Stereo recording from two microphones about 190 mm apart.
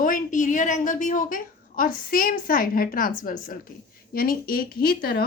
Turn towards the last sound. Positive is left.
turn(degrees=55)  # may be behind; listen again after turning